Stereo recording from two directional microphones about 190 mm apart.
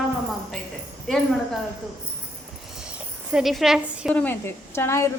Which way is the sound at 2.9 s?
Centre (ahead or behind).